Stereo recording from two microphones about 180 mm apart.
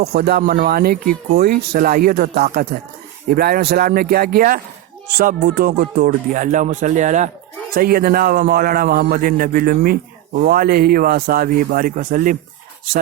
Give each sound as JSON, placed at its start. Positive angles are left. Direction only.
{"t": 0.0, "sound": "a man's voice", "side_deg": -55}
{"t": 7.8, "sound": "a man's voice", "side_deg": -55}